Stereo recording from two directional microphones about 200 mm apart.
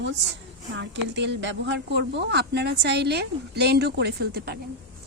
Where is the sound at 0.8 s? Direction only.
60° right (ahead or behind).